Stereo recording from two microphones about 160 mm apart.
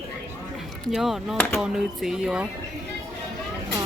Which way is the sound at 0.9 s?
Centre (ahead or behind).